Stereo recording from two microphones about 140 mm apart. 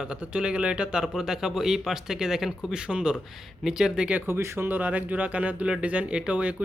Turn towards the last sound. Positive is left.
turn(degrees=-10)  # may be behind; listen again after turning